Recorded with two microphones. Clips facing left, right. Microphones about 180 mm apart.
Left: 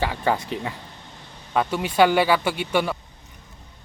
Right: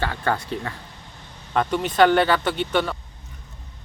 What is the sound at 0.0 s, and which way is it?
Speech, 15° left (ahead or behind).